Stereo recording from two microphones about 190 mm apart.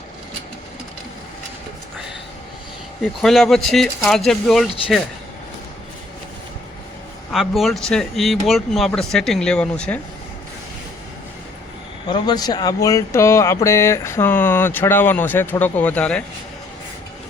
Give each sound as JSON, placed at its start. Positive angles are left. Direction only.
{"t": 3.0, "sound": "speech", "side_deg": 0}
{"t": 7.3, "sound": "speech", "side_deg": 0}
{"t": 12.0, "sound": "speech", "side_deg": 25}